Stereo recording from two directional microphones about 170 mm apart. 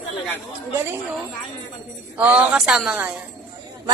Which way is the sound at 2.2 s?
10° right (ahead or behind).